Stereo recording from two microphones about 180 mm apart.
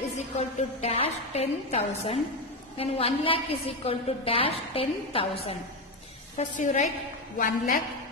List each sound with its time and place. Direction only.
0.4 s a woman's voice: 35° left (ahead or behind)
6.3 s a woman's voice: 45° left (ahead or behind)